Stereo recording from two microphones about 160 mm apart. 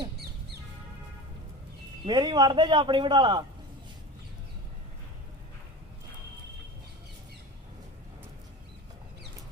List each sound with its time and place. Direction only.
2.0 s a man's voice: 30° right (ahead or behind)